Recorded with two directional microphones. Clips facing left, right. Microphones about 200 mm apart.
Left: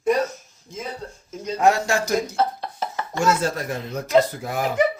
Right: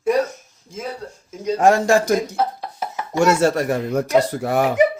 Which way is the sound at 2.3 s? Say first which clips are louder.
Right 1 dB; 10° right (ahead or behind).